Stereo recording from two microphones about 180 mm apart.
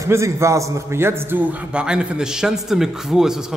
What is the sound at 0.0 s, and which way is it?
A man's voice, 15° right (ahead or behind).